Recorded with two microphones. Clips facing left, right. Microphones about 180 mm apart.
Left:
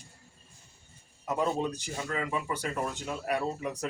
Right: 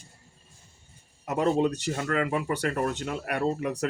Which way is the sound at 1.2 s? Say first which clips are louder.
Right 5 dB; 70° right (ahead or behind).